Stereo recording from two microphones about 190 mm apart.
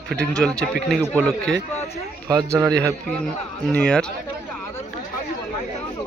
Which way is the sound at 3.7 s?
5° left (ahead or behind).